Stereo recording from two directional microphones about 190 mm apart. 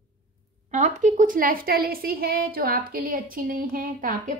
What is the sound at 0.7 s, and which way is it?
A woman's voice, 40° right (ahead or behind).